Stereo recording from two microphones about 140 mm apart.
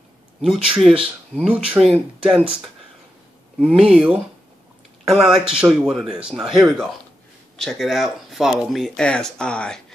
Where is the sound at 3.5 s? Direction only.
5° right (ahead or behind).